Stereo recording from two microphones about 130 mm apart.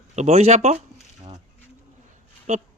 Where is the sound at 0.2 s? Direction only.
55° right (ahead or behind).